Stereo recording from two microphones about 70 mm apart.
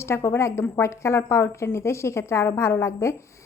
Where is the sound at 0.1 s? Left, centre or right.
Left.